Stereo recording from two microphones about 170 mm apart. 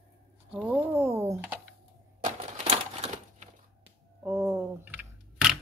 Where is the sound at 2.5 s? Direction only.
40° right (ahead or behind).